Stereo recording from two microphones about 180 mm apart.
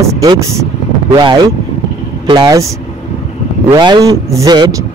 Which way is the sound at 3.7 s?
25° right (ahead or behind).